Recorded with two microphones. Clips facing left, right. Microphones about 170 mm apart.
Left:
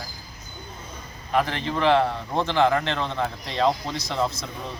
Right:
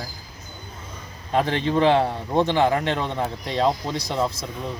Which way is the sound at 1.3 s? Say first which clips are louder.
Right 4 dB; 20° right (ahead or behind).